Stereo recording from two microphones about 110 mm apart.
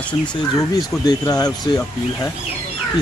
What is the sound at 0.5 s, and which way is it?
Speech, 35° left (ahead or behind).